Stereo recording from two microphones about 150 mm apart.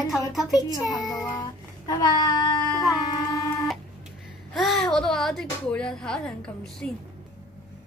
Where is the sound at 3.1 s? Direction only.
25° left (ahead or behind).